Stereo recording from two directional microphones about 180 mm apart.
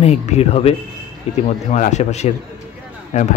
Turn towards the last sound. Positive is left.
turn(degrees=40)  # may be behind; listen again after turning